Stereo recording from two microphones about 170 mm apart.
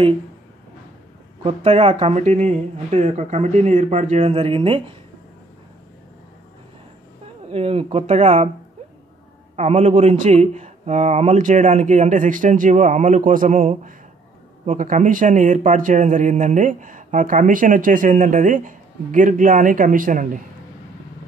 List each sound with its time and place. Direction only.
1.4 s speech: 30° right (ahead or behind)
7.5 s speech: 35° right (ahead or behind)
9.6 s speech: 40° right (ahead or behind)